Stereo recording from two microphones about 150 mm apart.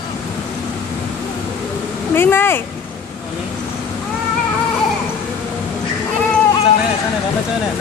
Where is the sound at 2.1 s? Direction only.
15° left (ahead or behind).